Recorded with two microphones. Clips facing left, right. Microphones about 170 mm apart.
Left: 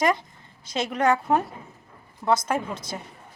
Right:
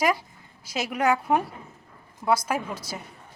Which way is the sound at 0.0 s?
5° right (ahead or behind).